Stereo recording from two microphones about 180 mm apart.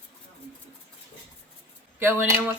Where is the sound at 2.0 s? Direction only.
10° right (ahead or behind).